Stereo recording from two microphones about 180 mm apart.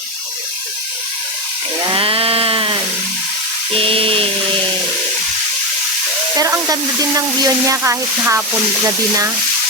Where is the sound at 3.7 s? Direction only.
30° right (ahead or behind).